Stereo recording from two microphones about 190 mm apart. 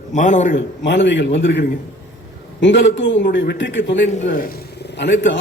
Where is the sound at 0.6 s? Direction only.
70° left (ahead or behind).